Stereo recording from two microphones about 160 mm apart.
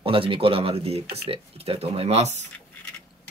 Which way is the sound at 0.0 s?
35° right (ahead or behind).